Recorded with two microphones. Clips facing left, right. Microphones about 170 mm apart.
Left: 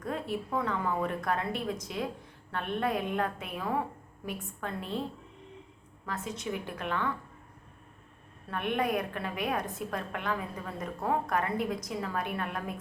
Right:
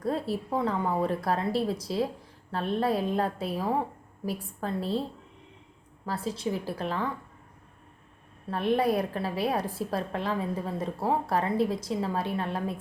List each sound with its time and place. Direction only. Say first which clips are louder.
0.0 s a woman's voice: right 4 dB; 35° right (ahead or behind)
6.1 s a woman's voice: right 5 dB; 30° right (ahead or behind)
8.4 s a woman's voice: right 5 dB; 30° right (ahead or behind)